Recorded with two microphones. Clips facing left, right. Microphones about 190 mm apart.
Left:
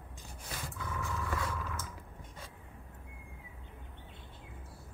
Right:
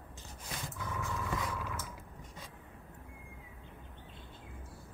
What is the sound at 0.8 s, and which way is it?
Vehicle, 15° right (ahead or behind).